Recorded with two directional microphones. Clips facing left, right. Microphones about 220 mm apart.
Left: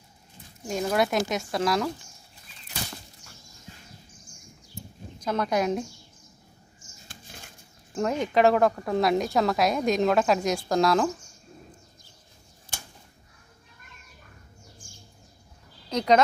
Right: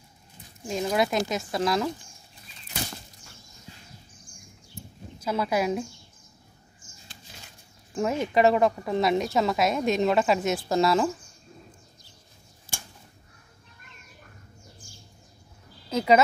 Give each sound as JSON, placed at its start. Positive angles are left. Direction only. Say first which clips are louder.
{"t": 0.9, "sound": "speech", "louder": "left 1 dB", "side_deg": 0}
{"t": 5.2, "sound": "speech", "louder": "even", "side_deg": -5}
{"t": 7.1, "sound": "a sound", "louder": "left 3 dB", "side_deg": 50}
{"t": 7.9, "sound": "speech", "louder": "even", "side_deg": -5}
{"t": 12.7, "sound": "a sound", "louder": "right 1 dB", "side_deg": -5}
{"t": 15.9, "sound": "speech", "louder": "right 1 dB", "side_deg": -5}